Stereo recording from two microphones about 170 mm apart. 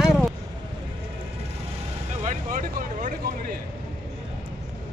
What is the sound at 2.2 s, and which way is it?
Vehicle, 50° right (ahead or behind).